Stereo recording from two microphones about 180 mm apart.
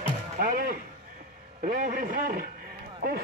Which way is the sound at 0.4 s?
50° right (ahead or behind).